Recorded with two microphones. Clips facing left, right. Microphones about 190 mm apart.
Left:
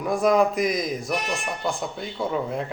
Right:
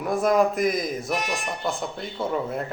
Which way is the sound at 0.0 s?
Centre (ahead or behind).